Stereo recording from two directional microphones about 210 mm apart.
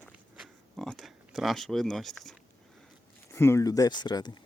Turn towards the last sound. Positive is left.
turn(degrees=20)  # may be behind; listen again after turning